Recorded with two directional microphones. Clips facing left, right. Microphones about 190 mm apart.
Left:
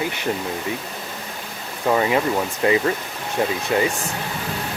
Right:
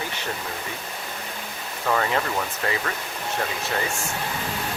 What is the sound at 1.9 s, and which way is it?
Speech, 15° left (ahead or behind).